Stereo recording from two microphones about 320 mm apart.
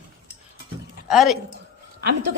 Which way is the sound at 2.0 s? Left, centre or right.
Right.